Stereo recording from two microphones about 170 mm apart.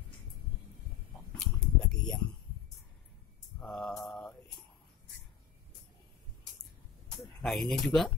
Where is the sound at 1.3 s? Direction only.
5° left (ahead or behind).